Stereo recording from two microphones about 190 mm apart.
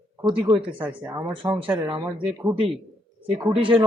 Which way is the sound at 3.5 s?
25° right (ahead or behind).